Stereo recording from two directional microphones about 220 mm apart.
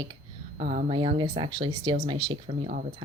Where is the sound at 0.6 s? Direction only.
35° right (ahead or behind).